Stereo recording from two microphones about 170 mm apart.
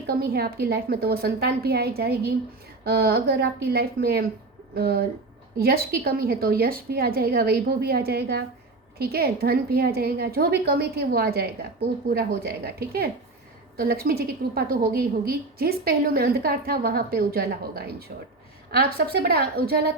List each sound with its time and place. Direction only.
0.1 s a woman's voice: 65° right (ahead or behind)